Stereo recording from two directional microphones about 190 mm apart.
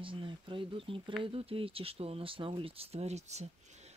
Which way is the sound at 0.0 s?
25° right (ahead or behind).